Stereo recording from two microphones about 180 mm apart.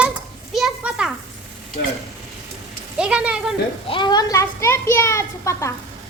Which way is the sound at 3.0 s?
5° right (ahead or behind).